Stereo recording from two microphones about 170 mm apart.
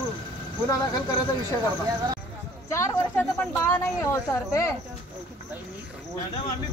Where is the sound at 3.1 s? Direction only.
15° left (ahead or behind).